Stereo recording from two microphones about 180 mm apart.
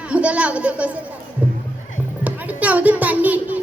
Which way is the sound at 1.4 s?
10° right (ahead or behind).